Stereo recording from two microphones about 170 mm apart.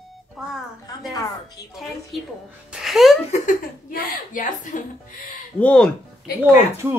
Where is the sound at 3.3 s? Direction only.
55° left (ahead or behind).